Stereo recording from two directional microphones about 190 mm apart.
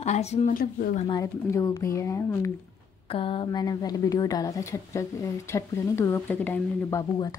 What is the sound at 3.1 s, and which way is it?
A woman's voice, 30° left (ahead or behind).